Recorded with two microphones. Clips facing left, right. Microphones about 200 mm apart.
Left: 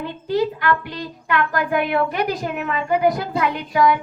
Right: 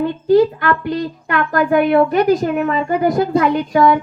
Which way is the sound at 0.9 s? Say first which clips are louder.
Right 6 dB; 45° right (ahead or behind).